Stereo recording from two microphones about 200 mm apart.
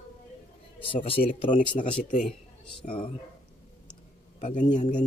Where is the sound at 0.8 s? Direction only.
25° left (ahead or behind).